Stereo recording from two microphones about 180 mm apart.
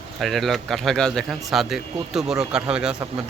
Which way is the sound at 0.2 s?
Centre (ahead or behind).